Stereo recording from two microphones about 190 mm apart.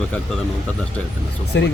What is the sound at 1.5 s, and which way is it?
Speech, 70° left (ahead or behind).